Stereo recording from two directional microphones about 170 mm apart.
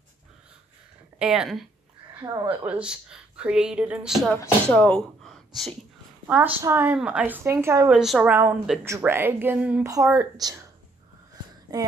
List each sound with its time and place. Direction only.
1.2 s speech: 5° right (ahead or behind)
2.2 s speech: 25° right (ahead or behind)
2.6 s speech: 5° right (ahead or behind)
6.2 s a woman's voice: 10° right (ahead or behind)
7.9 s speech: 5° right (ahead or behind)
8.8 s a woman's voice: 15° right (ahead or behind)
9.8 s speech: 20° right (ahead or behind)